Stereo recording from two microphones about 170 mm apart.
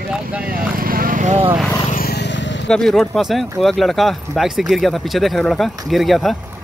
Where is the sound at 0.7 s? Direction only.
55° right (ahead or behind).